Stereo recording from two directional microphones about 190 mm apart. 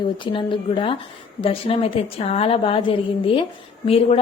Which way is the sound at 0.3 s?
25° left (ahead or behind).